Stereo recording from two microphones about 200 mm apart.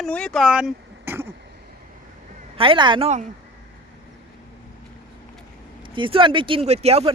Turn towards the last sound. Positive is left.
turn(degrees=-30)  # may be behind; listen again after turning